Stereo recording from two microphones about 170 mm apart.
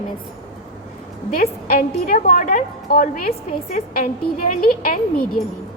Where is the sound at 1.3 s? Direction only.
60° left (ahead or behind).